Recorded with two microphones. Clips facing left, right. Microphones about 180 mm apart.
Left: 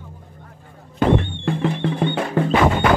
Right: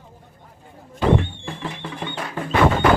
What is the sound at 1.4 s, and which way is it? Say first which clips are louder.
Music: left 10 dB; 65° left (ahead or behind).